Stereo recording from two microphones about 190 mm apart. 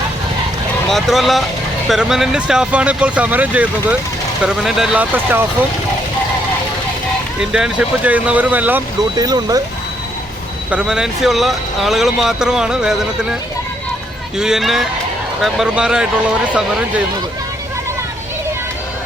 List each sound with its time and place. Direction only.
0.9 s speech: centre (ahead or behind)
7.5 s speech: 5° right (ahead or behind)
9.1 s speech: 20° right (ahead or behind)
10.7 s speech: 5° right (ahead or behind)
14.3 s speech: 5° right (ahead or behind)